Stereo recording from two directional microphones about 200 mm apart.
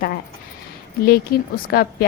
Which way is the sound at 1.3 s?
50° left (ahead or behind).